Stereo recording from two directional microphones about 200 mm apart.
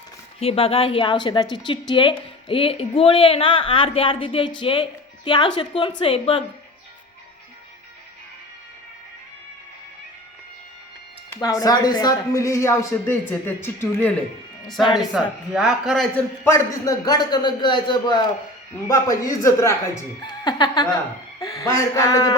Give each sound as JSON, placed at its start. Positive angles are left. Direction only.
{"t": 0.3, "sound": "a woman's voice", "side_deg": 30}
{"t": 11.3, "sound": "a man's voice", "side_deg": 15}